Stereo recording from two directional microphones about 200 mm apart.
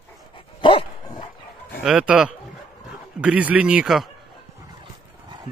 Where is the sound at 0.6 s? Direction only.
25° left (ahead or behind).